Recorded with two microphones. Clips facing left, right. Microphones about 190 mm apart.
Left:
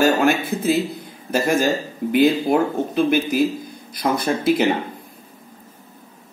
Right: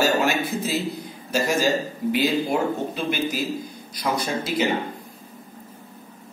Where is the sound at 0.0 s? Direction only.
55° left (ahead or behind).